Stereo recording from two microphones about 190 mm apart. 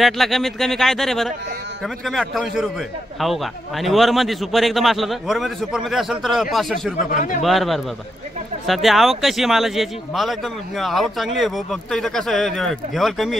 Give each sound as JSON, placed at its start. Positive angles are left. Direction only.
{"t": 0.0, "sound": "a man's voice", "side_deg": 0}
{"t": 7.1, "sound": "a man's voice", "side_deg": 45}
{"t": 7.4, "sound": "a man's voice", "side_deg": 0}